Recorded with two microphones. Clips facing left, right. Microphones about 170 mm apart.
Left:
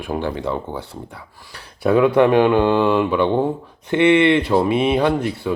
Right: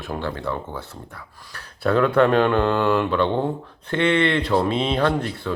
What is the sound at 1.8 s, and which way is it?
Speech, 10° left (ahead or behind).